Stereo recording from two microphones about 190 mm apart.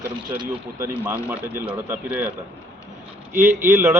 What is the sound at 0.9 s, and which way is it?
A man's voice, 10° right (ahead or behind).